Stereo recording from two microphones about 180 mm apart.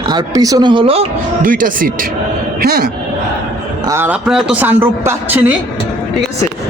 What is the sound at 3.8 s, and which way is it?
A woman's voice, 15° right (ahead or behind).